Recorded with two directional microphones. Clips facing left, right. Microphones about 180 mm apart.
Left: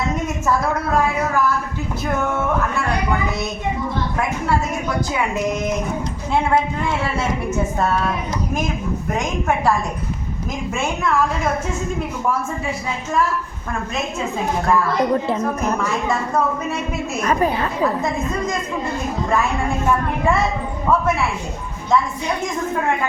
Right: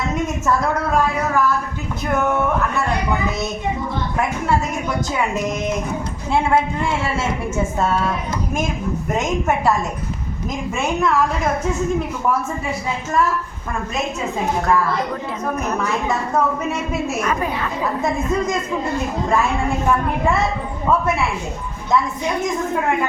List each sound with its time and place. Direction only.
17.2 s a woman's voice: 35° left (ahead or behind)